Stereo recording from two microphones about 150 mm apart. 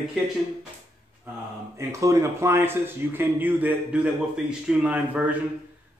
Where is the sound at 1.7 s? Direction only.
20° right (ahead or behind).